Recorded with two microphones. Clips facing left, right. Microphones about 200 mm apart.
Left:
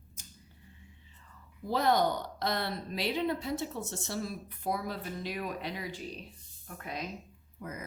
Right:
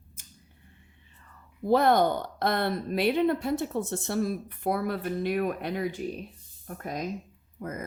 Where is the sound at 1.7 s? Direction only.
55° right (ahead or behind).